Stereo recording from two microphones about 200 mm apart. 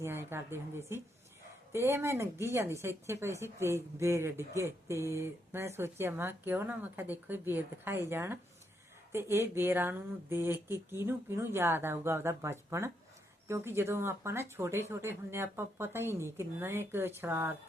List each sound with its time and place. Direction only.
0.0 s speech: 10° right (ahead or behind)